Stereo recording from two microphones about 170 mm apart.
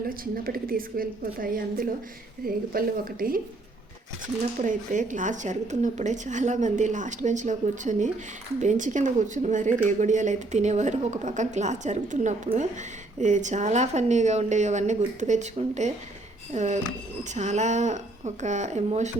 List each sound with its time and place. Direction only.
0.1 s a woman's voice: 55° right (ahead or behind)
4.6 s a woman's voice: 50° right (ahead or behind)